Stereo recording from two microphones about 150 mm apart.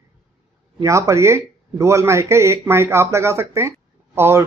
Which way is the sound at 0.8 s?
20° right (ahead or behind).